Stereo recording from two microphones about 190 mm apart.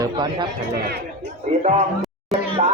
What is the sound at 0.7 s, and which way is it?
Speech, 55° right (ahead or behind).